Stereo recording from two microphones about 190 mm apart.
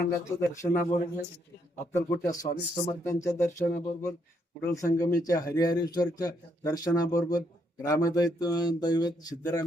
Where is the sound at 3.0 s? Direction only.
15° left (ahead or behind).